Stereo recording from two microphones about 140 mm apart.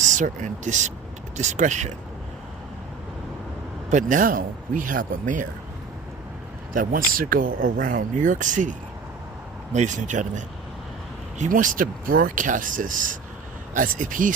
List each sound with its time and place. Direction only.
0.0 s speech: 60° right (ahead or behind)
3.9 s speech: 70° right (ahead or behind)
6.7 s speech: 85° right; by 8.7 s 65° right (ahead or behind)
9.7 s speech: 60° right (ahead or behind)